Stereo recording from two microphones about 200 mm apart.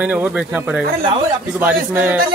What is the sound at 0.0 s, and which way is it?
Speech, 10° right (ahead or behind).